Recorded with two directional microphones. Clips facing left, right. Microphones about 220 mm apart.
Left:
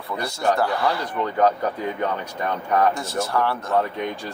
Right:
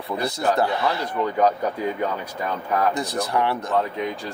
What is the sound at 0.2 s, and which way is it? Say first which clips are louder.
Speech: even; 20° right (ahead or behind).